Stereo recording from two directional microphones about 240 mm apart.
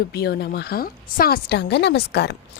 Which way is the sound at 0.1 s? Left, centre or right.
Left.